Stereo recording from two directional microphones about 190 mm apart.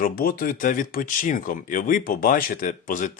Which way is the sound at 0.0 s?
50° left (ahead or behind).